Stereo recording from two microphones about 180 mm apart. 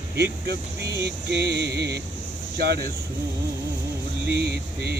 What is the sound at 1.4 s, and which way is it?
Mantra, 65° right (ahead or behind).